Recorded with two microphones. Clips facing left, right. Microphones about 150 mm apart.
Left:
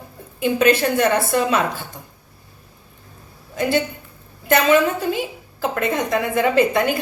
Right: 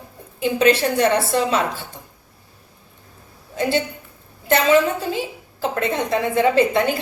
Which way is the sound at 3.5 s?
25° right (ahead or behind).